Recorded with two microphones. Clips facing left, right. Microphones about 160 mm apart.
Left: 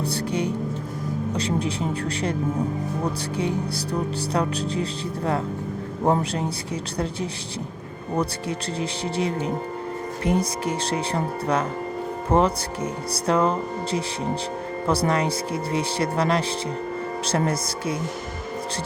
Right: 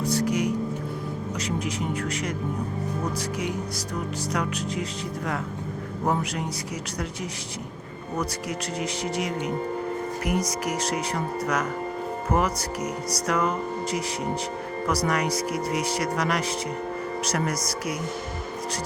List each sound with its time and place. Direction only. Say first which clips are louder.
0.0 s music: right 1 dB; 30° left (ahead or behind)
1.4 s speech: left 3 dB; 30° left (ahead or behind)
8.1 s speech: left 4 dB; 30° left (ahead or behind)